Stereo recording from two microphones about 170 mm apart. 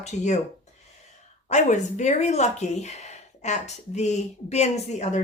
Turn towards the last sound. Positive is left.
turn(degrees=40)  # may be behind; listen again after turning